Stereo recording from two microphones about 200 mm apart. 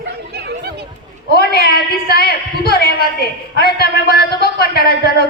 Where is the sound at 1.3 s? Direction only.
50° left (ahead or behind).